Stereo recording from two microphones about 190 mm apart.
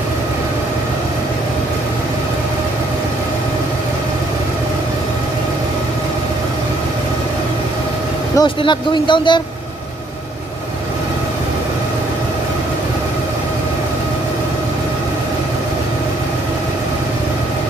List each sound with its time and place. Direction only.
8.4 s speech: 25° left (ahead or behind)